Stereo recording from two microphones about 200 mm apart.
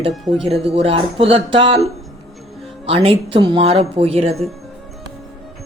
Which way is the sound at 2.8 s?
30° right (ahead or behind).